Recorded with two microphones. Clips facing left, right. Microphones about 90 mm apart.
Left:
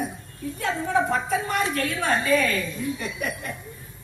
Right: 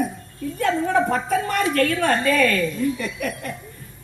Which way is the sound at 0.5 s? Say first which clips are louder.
Right 4 dB; 50° right (ahead or behind).